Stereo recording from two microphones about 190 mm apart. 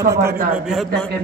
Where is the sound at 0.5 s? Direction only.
Centre (ahead or behind).